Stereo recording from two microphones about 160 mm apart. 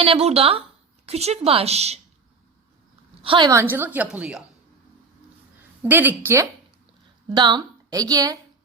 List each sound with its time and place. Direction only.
0.0 s speech: 35° right (ahead or behind)
3.2 s speech: 30° right (ahead or behind)
3.5 s a woman's voice: 15° right (ahead or behind)
5.8 s a woman's voice: 10° right (ahead or behind)
7.3 s a woman's voice: 25° right (ahead or behind)